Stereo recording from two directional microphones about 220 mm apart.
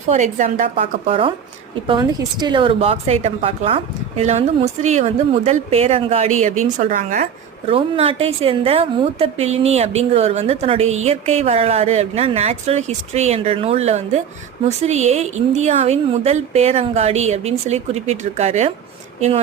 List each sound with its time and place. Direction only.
0.1 s a woman's voice: 30° right (ahead or behind)
7.7 s speech: 25° right (ahead or behind)